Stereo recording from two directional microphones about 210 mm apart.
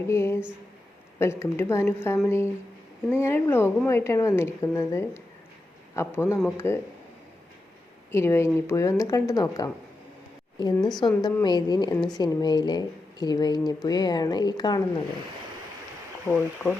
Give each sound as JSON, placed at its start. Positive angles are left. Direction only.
{"t": 0.1, "sound": "a woman's voice", "side_deg": 10}
{"t": 8.1, "sound": "a woman's voice", "side_deg": 10}
{"t": 16.3, "sound": "a woman's voice", "side_deg": 5}